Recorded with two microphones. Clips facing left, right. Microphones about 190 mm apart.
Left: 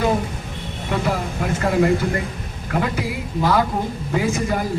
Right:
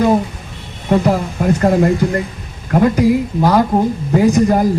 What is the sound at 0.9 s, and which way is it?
A man's voice, 40° right (ahead or behind).